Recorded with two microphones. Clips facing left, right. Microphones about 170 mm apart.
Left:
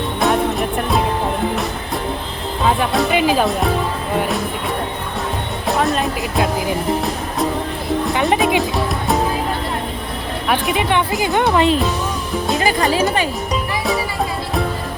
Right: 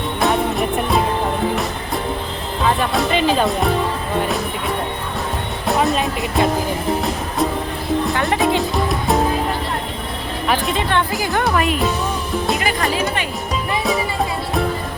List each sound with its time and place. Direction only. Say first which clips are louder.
0.2 s music: left 1 dB; centre (ahead or behind)
2.9 s speech: left 1 dB; centre (ahead or behind)
5.6 s speech: even; centre (ahead or behind)
8.1 s music: left 4 dB; 20° left (ahead or behind)
8.9 s music: right 1 dB; centre (ahead or behind)
10.8 s speech: left 2 dB; 15° left (ahead or behind)